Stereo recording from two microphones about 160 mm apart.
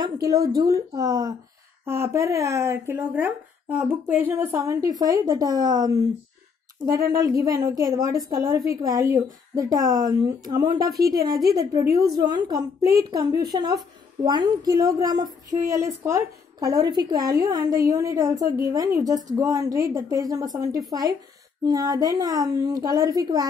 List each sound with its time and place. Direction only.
0.0 s speech: 25° right (ahead or behind)